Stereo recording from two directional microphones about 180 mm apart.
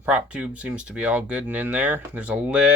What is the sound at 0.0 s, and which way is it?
Speech, 5° right (ahead or behind).